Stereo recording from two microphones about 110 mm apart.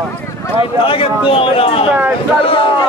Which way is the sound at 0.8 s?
55° left (ahead or behind).